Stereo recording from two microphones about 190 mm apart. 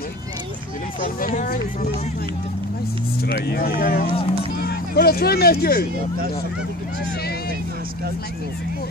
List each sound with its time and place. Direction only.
1.0 s speech: 45° left (ahead or behind)
3.3 s speech: 55° left (ahead or behind)